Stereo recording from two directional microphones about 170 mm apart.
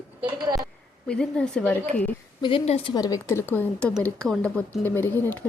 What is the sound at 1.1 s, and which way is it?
Speech, 5° left (ahead or behind).